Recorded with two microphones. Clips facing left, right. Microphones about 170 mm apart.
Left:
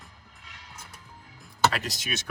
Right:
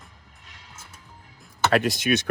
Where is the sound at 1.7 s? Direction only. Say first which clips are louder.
Right 11 dB; 55° right (ahead or behind).